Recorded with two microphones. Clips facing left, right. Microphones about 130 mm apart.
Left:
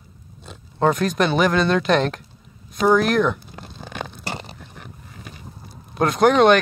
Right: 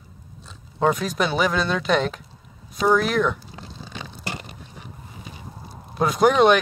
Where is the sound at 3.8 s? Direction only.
55° left (ahead or behind).